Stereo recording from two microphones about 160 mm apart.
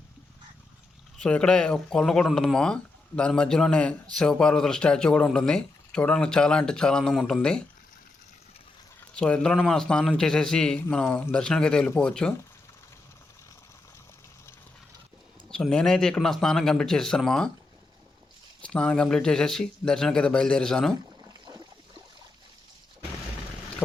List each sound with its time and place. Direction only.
1.2 s speech: 5° left (ahead or behind)
9.1 s speech: 5° left (ahead or behind)
15.4 s speech: 5° left (ahead or behind)
18.6 s speech: 5° left (ahead or behind)
21.2 s boat: 25° right (ahead or behind)